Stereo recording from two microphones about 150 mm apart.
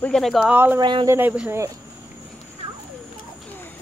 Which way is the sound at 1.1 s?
10° right (ahead or behind).